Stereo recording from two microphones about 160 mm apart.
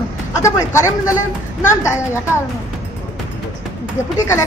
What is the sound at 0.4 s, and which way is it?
A woman's voice, 20° left (ahead or behind).